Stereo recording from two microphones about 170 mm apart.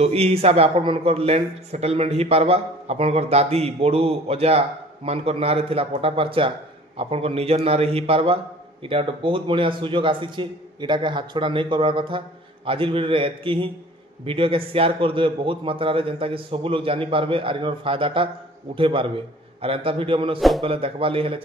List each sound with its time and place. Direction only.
0.0 s a man's voice: 35° right (ahead or behind)
20.3 s a man's voice: centre (ahead or behind)
20.6 s a man's voice: 35° right (ahead or behind)